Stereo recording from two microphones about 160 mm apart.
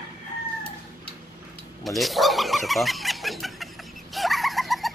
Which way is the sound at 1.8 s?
Centre (ahead or behind).